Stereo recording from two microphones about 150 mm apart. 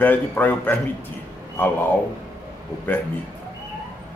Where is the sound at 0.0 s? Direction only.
10° left (ahead or behind).